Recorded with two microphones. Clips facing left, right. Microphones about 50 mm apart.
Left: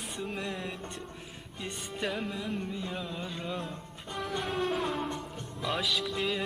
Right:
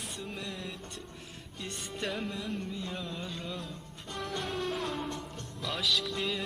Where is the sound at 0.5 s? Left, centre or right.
Centre.